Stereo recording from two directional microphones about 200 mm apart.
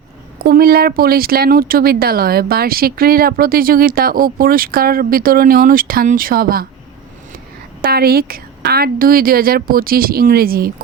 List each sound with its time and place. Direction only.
0.4 s speech: 50° right (ahead or behind)
7.8 s speech: 50° right (ahead or behind)